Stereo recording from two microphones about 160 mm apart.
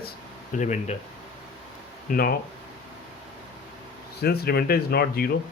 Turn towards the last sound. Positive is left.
turn(degrees=70)  # may be behind; listen again after turning